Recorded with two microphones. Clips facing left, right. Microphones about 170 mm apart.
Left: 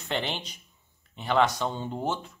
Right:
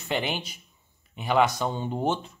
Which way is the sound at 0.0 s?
10° right (ahead or behind).